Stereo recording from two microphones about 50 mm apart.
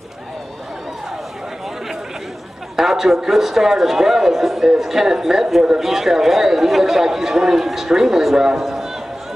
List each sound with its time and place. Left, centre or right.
2.7 s a man's voice: centre